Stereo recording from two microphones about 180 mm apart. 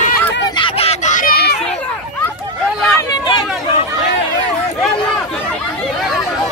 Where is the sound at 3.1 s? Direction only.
30° left (ahead or behind).